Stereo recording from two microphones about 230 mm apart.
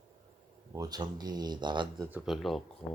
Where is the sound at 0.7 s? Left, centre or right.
Centre.